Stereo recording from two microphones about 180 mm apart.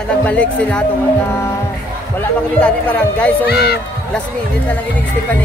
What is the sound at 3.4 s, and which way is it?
Speech, 60° left (ahead or behind).